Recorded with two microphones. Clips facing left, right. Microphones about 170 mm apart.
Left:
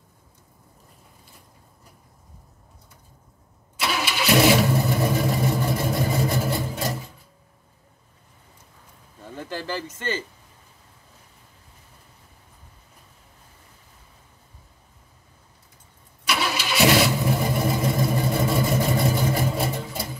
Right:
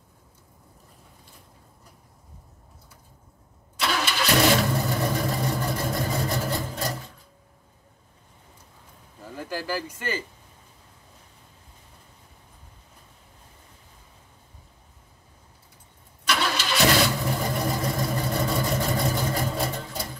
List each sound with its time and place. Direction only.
3.7 s vehicle: 5° left (ahead or behind)
9.5 s a sound: 10° right (ahead or behind)
9.9 s speech: 25° left (ahead or behind)
16.3 s vehicle: 5° left (ahead or behind)